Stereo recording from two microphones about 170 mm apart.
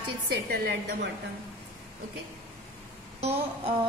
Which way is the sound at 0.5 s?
65° right (ahead or behind).